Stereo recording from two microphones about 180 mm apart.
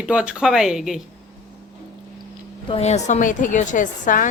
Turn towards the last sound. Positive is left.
turn(degrees=45)  # may be behind; listen again after turning